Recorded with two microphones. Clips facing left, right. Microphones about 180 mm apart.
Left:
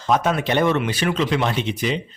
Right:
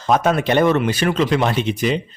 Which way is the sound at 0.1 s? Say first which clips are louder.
Right 3 dB; 45° right (ahead or behind).